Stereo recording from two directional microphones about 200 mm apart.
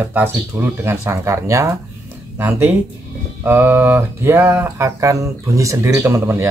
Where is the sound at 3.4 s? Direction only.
10° right (ahead or behind).